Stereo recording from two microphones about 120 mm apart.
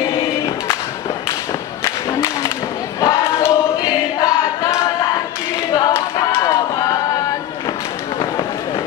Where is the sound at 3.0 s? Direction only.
25° left (ahead or behind).